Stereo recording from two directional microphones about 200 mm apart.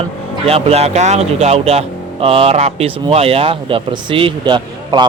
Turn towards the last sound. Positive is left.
turn(degrees=-20)  # may be behind; listen again after turning